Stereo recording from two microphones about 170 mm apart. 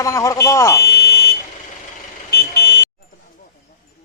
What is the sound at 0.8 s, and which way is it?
Buzzer, 70° left (ahead or behind).